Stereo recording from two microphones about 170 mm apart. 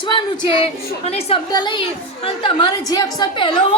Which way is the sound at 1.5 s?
25° left (ahead or behind).